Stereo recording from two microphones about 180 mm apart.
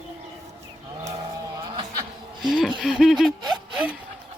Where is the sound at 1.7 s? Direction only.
25° right (ahead or behind).